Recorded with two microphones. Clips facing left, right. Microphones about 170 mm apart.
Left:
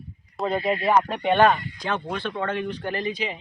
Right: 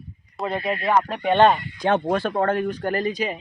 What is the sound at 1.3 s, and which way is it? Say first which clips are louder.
Speech: right 2 dB; 25° right (ahead or behind).